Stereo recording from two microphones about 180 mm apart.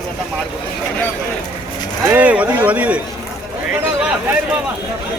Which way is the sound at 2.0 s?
10° right (ahead or behind).